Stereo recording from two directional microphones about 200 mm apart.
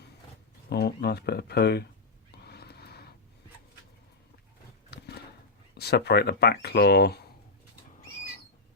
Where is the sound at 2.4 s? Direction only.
55° left (ahead or behind).